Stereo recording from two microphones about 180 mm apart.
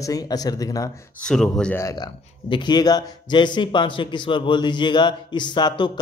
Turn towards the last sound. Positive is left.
turn(degrees=25)  # may be behind; listen again after turning